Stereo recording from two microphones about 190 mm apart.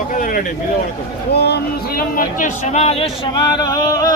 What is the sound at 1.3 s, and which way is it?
Speech, 60° left (ahead or behind).